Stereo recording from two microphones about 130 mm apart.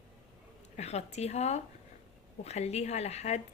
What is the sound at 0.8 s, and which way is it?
A woman's voice, 60° left (ahead or behind).